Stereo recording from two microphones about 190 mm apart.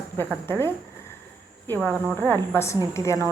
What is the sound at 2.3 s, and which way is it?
A woman's voice, 15° left (ahead or behind).